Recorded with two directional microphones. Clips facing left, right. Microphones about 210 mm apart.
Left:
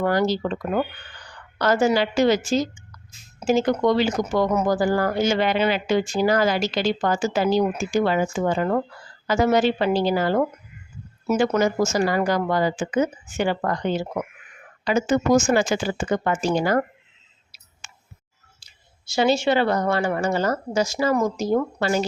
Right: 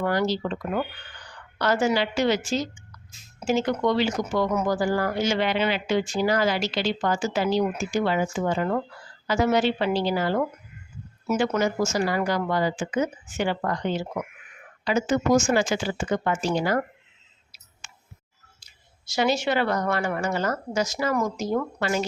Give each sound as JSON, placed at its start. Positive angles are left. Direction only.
{"t": 0.0, "sound": "a woman's voice", "side_deg": 45}
{"t": 15.5, "sound": "speech", "side_deg": 45}
{"t": 18.6, "sound": "speech", "side_deg": 30}